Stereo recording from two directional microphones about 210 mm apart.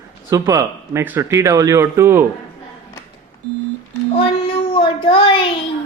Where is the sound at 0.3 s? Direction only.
15° right (ahead or behind).